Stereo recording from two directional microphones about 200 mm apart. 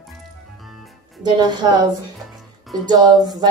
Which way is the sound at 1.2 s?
20° right (ahead or behind).